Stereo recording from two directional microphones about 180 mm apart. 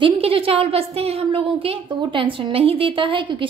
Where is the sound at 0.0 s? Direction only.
30° right (ahead or behind).